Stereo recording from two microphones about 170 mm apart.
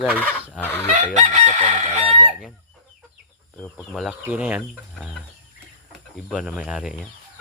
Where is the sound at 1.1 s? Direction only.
45° right (ahead or behind).